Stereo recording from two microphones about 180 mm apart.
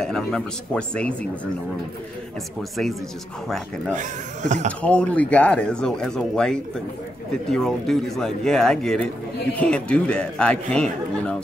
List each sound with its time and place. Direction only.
0.0 s speech: 5° left (ahead or behind)
3.4 s speech: 5° left (ahead or behind)
3.9 s speech: 45° right (ahead or behind)
4.8 s speech: 5° left (ahead or behind)